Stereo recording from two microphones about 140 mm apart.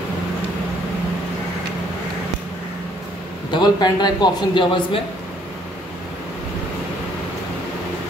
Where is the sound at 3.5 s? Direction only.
30° left (ahead or behind).